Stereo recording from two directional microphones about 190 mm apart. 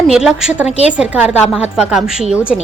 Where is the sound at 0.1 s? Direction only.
5° right (ahead or behind).